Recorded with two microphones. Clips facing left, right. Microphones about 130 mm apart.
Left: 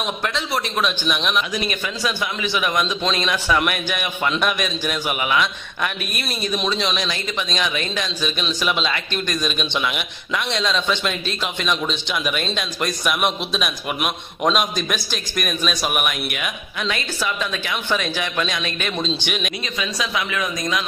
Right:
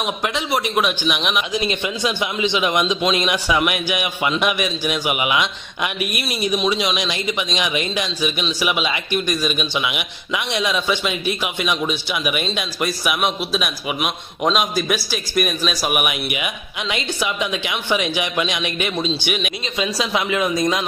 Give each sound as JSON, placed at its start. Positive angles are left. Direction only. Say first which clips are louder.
{"t": 0.2, "sound": "a man's voice", "louder": "right 2 dB", "side_deg": -15}
{"t": 1.5, "sound": "a man's voice", "louder": "right 3 dB", "side_deg": -20}
{"t": 19.8, "sound": "speech", "louder": "right 4 dB", "side_deg": -25}